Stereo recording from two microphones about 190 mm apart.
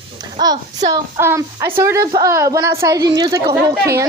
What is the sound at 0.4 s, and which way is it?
A child's voice, 20° right (ahead or behind).